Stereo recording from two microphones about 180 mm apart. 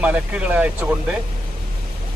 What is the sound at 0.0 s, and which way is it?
Speech, 10° right (ahead or behind).